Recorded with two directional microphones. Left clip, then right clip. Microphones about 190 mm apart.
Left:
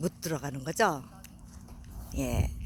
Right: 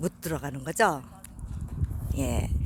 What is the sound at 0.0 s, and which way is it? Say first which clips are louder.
Speech: right 2 dB; centre (ahead or behind).